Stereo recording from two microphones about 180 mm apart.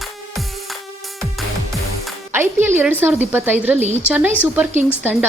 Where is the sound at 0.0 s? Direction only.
Centre (ahead or behind).